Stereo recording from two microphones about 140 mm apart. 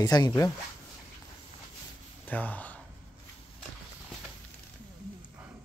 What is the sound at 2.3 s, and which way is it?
Speech, 10° left (ahead or behind).